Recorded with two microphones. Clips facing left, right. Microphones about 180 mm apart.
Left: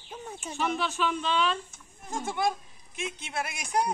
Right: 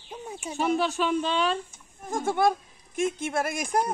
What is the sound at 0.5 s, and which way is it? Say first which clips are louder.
Speech: right 5 dB; 40° right (ahead or behind).